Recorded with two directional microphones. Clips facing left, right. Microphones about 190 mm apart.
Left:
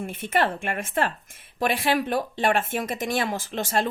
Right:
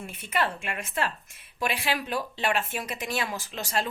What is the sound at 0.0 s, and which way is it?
Speech, 50° left (ahead or behind).